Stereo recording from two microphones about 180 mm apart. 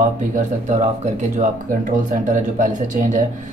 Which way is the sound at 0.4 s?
40° right (ahead or behind).